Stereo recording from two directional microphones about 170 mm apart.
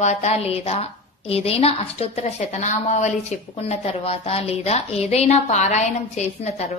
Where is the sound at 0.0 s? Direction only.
40° left (ahead or behind).